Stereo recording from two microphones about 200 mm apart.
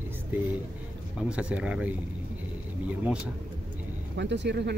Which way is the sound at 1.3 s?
5° right (ahead or behind).